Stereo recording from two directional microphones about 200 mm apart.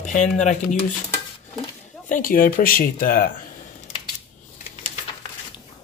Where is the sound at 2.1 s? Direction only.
45° left (ahead or behind).